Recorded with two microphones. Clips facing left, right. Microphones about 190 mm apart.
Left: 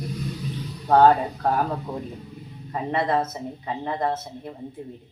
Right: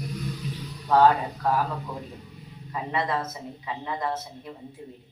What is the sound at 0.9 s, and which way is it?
Speech, 45° left (ahead or behind).